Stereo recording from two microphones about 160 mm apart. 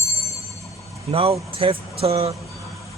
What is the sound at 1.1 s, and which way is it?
Speech, 35° right (ahead or behind).